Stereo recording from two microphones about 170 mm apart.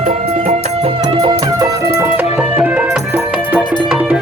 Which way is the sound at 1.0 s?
30° right (ahead or behind).